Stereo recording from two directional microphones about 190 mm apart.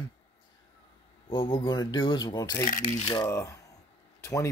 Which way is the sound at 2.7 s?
40° left (ahead or behind).